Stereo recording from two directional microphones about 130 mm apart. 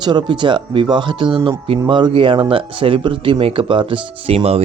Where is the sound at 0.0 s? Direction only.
35° right (ahead or behind).